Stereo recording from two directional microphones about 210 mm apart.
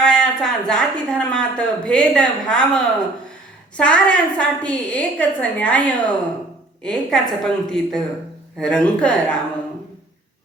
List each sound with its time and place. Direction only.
0.0 s a woman's voice: 5° left (ahead or behind)
3.8 s a woman's voice: 5° left (ahead or behind)